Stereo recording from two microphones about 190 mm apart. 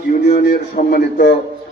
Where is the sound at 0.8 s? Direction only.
45° left (ahead or behind).